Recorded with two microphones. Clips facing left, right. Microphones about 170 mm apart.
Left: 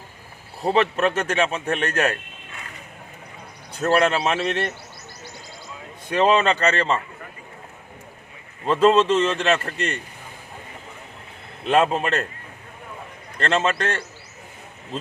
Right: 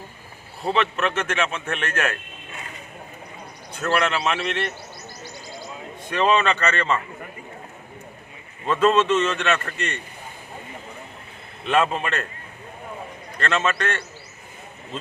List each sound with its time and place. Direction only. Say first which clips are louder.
0.7 s speech: left 3 dB; 40° left (ahead or behind)
3.8 s speech: left 4 dB; 40° left (ahead or behind)
6.1 s speech: left 2 dB; 35° left (ahead or behind)
8.6 s speech: left 2 dB; 30° left (ahead or behind)
11.6 s speech: left 2 dB; 35° left (ahead or behind)
13.4 s speech: left 2 dB; 30° left (ahead or behind)